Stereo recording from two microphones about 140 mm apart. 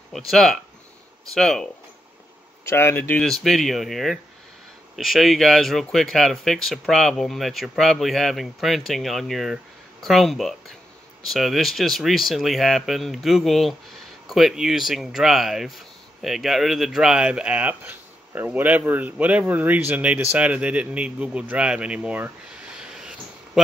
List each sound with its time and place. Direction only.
0.1 s speech: centre (ahead or behind)
2.6 s speech: 15° left (ahead or behind)
3.3 s speech: centre (ahead or behind)